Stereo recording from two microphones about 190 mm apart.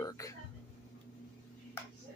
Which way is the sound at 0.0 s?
20° left (ahead or behind).